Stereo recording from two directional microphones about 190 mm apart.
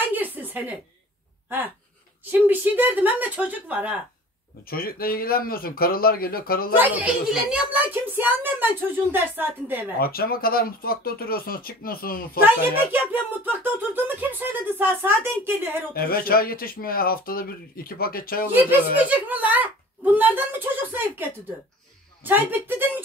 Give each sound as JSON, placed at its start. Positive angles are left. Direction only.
{"t": 0.1, "sound": "a sound", "side_deg": -10}
{"t": 2.3, "sound": "speech", "side_deg": -10}
{"t": 4.6, "sound": "speech", "side_deg": 50}
{"t": 6.8, "sound": "speech", "side_deg": -5}
{"t": 9.9, "sound": "speech", "side_deg": 50}
{"t": 12.4, "sound": "speech", "side_deg": -10}
{"t": 15.9, "sound": "speech", "side_deg": 50}
{"t": 18.5, "sound": "speech", "side_deg": -10}